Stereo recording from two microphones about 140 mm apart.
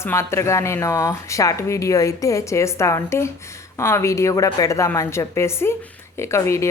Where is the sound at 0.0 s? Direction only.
20° left (ahead or behind).